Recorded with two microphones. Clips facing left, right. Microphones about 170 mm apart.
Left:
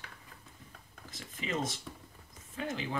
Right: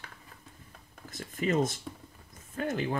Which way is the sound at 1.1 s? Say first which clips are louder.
Right 8 dB; 50° right (ahead or behind).